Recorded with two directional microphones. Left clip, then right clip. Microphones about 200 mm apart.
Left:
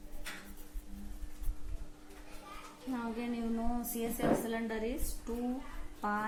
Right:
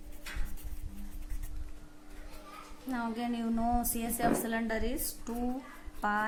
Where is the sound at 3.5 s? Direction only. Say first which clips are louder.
Right 6 dB; 45° right (ahead or behind).